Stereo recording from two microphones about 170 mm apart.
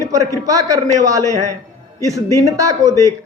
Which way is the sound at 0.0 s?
20° right (ahead or behind).